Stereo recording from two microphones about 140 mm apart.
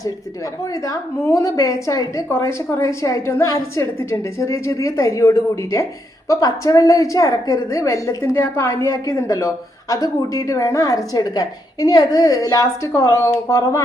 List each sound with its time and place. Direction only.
0.7 s a woman's voice: 25° left (ahead or behind)